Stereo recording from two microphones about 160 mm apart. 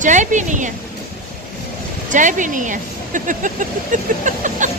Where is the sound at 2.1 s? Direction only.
50° right (ahead or behind).